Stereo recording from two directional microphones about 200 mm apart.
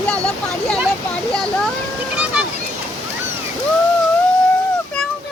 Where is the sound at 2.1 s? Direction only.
5° right (ahead or behind).